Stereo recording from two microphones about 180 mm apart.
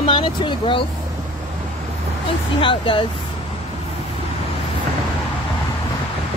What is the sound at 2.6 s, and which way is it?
Speech, 30° left (ahead or behind).